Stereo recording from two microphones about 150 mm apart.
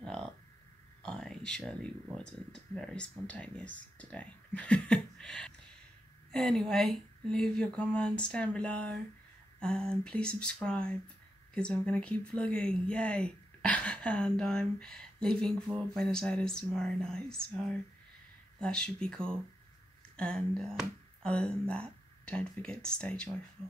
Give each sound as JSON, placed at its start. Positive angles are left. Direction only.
{"t": 0.0, "sound": "hum", "side_deg": 5}
{"t": 1.0, "sound": "speech", "side_deg": 5}